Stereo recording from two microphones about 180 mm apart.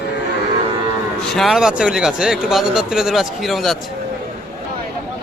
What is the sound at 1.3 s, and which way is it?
Cattle, centre (ahead or behind).